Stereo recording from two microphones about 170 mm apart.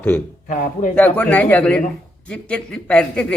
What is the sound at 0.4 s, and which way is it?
Speech, 50° left (ahead or behind).